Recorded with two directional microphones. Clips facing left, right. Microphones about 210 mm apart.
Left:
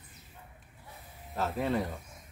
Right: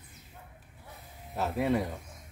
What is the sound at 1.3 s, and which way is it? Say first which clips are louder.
Speech: right 2 dB; 5° right (ahead or behind).